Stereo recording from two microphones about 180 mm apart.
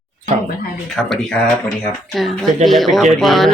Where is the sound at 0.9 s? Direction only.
5° left (ahead or behind).